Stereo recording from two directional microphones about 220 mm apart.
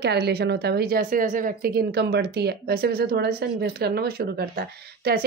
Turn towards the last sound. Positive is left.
turn(degrees=-45)  # may be behind; listen again after turning